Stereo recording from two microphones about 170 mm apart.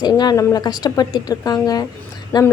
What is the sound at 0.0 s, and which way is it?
A woman's voice, 25° left (ahead or behind).